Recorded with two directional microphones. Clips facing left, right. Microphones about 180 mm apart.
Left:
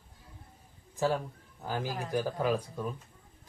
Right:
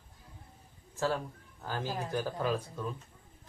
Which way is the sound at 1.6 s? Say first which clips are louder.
Left 1 dB; 15° left (ahead or behind).